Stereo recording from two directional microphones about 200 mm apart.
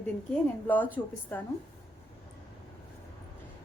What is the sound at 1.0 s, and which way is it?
Speech, 10° left (ahead or behind).